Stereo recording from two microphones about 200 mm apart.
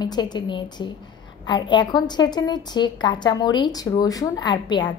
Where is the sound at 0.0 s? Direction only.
20° left (ahead or behind).